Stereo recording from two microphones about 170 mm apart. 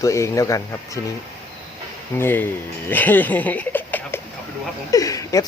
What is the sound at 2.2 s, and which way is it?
Speech, 10° left (ahead or behind).